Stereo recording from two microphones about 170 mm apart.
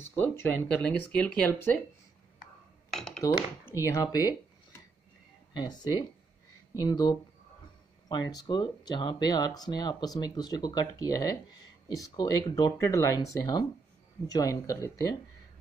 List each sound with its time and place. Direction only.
0.2 s speech: 10° left (ahead or behind)
2.9 s dishes: 5° left (ahead or behind)
3.6 s speech: 15° left (ahead or behind)
5.5 s speech: 25° left (ahead or behind)